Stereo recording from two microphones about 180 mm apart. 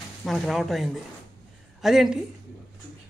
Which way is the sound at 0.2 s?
Centre (ahead or behind).